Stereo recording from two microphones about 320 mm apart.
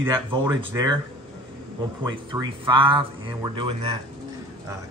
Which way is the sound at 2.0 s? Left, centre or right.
Centre.